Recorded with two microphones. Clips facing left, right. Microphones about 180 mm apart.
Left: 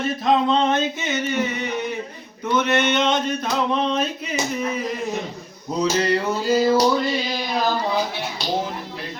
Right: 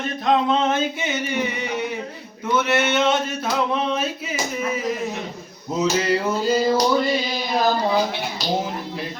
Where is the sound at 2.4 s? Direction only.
10° right (ahead or behind).